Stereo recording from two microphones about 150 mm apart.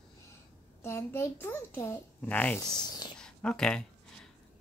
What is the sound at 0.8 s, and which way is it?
A child's voice, 15° left (ahead or behind).